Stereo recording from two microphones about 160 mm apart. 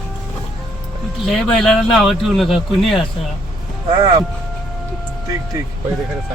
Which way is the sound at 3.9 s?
25° right (ahead or behind).